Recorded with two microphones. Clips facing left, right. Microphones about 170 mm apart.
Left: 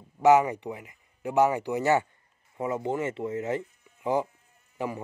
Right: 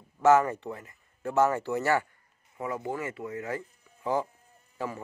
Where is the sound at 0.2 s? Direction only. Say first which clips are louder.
Left 2 dB; 15° left (ahead or behind).